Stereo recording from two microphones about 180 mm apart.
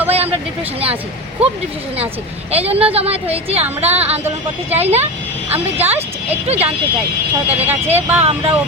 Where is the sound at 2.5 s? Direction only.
35° right (ahead or behind).